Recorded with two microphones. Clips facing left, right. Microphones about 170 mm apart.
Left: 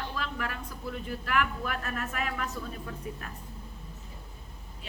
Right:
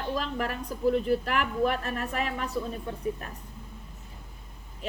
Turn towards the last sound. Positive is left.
turn(degrees=-30)  # may be behind; listen again after turning